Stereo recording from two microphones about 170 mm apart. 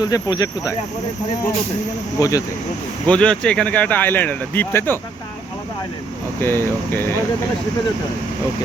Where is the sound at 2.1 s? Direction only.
20° left (ahead or behind).